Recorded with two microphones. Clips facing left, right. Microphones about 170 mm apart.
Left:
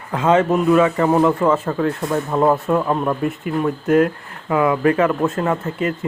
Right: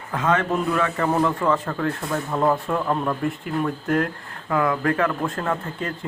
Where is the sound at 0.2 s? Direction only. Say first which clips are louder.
Left 6 dB; 20° left (ahead or behind).